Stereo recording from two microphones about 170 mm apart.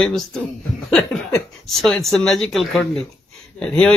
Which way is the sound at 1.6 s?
Centre (ahead or behind).